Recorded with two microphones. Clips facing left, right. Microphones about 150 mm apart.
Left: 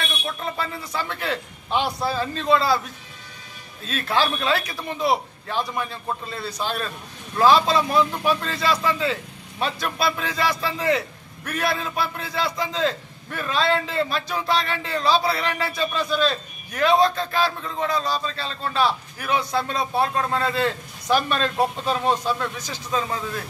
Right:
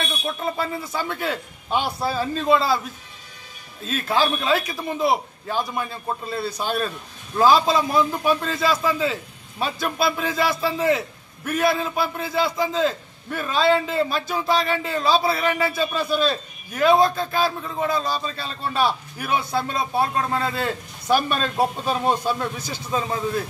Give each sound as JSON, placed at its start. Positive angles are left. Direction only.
{"t": 0.4, "sound": "speech", "side_deg": -10}
{"t": 4.1, "sound": "a man's voice", "side_deg": 0}